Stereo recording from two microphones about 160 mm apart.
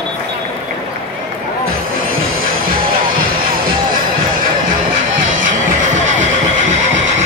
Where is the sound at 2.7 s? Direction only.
65° right (ahead or behind).